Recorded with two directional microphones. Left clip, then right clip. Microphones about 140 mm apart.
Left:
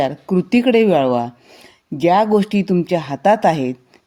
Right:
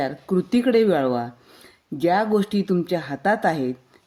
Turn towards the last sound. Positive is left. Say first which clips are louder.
# left 7 dB
turn(degrees=25)  # may be behind; listen again after turning